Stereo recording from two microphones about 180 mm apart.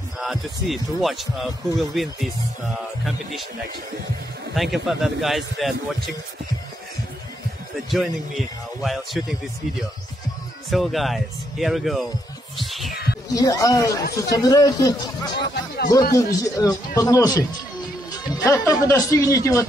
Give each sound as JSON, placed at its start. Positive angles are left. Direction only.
{"t": 0.2, "sound": "speech", "side_deg": 0}
{"t": 4.6, "sound": "speech", "side_deg": 0}
{"t": 7.7, "sound": "speech", "side_deg": 0}
{"t": 10.7, "sound": "speech", "side_deg": 0}
{"t": 12.5, "sound": "music", "side_deg": 0}
{"t": 13.3, "sound": "speech", "side_deg": 20}
{"t": 18.3, "sound": "music", "side_deg": 15}
{"t": 18.7, "sound": "speech", "side_deg": 20}